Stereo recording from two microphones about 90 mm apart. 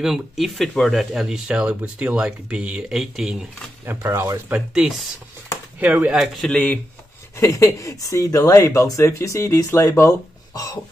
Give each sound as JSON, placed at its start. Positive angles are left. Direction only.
{"t": 0.0, "sound": "speech", "side_deg": -5}
{"t": 3.8, "sound": "speech", "side_deg": -30}
{"t": 4.6, "sound": "speech", "side_deg": -10}
{"t": 6.1, "sound": "speech", "side_deg": -5}
{"t": 6.4, "sound": "speech", "side_deg": 10}
{"t": 7.3, "sound": "speech", "side_deg": 35}
{"t": 10.5, "sound": "a sound", "side_deg": 45}